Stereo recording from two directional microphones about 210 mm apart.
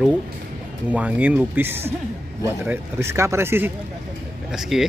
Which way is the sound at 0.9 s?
5° right (ahead or behind).